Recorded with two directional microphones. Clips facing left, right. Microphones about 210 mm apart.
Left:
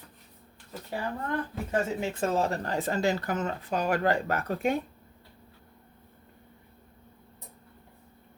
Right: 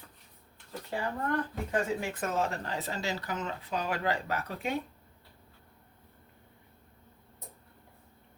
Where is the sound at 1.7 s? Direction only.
25° left (ahead or behind); by 4.8 s 50° left (ahead or behind).